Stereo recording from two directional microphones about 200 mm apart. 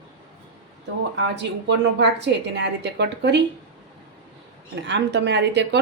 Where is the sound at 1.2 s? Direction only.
60° right (ahead or behind).